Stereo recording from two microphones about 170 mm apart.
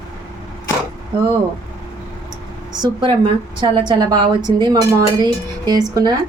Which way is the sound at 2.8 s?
25° right (ahead or behind).